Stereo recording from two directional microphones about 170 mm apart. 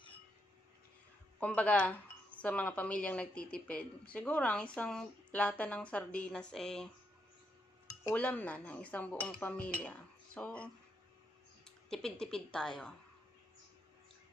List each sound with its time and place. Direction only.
1.4 s speech: 10° left (ahead or behind)
7.8 s dishes: 20° left (ahead or behind)
8.2 s speech: 10° left (ahead or behind)